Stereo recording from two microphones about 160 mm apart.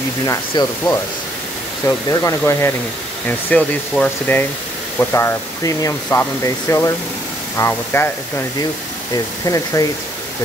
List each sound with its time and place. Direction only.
0.3 s speech: 20° left (ahead or behind)